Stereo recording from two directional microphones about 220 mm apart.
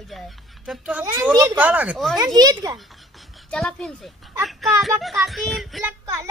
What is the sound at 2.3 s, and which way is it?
Speech, 15° right (ahead or behind).